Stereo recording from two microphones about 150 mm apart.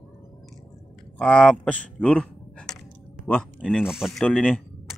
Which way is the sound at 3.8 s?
5° right (ahead or behind).